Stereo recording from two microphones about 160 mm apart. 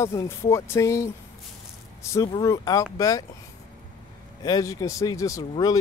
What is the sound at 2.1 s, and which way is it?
Speech, 20° left (ahead or behind).